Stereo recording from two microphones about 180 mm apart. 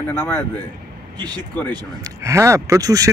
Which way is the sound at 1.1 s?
25° right (ahead or behind).